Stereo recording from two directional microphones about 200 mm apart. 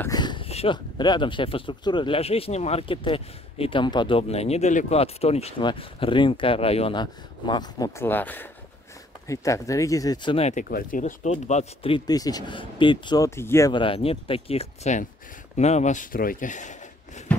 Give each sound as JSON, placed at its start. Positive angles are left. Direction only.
{"t": 0.0, "sound": "speech", "side_deg": 20}